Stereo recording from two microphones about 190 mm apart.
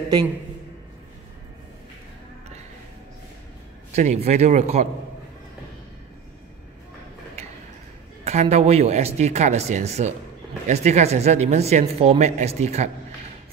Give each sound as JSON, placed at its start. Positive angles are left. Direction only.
{"t": 3.9, "sound": "speech", "side_deg": -35}
{"t": 8.2, "sound": "speech", "side_deg": -35}